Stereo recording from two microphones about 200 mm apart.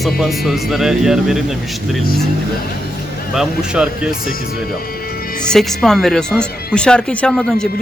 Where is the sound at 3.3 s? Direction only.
5° right (ahead or behind).